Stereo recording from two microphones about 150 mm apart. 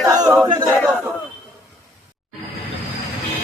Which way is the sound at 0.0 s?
25° right (ahead or behind).